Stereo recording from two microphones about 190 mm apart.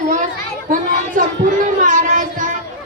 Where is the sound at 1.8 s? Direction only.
45° right (ahead or behind).